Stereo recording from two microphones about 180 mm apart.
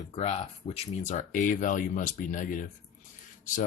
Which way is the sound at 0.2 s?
40° left (ahead or behind).